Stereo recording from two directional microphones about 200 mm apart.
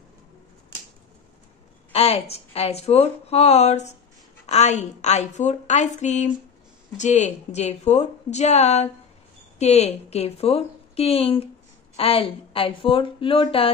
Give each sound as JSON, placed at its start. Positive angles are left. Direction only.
{"t": 1.9, "sound": "a woman's voice", "side_deg": 30}